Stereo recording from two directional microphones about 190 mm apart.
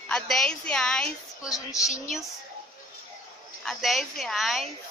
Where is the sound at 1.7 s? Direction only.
15° left (ahead or behind).